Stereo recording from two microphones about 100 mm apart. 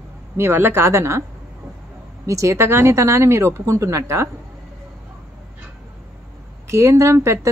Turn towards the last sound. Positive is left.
turn(degrees=-30)  # may be behind; listen again after turning